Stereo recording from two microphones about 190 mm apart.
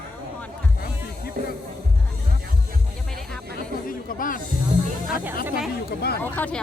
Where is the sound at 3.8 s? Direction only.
45° left (ahead or behind).